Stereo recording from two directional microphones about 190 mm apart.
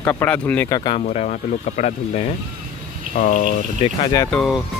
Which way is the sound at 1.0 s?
40° left (ahead or behind).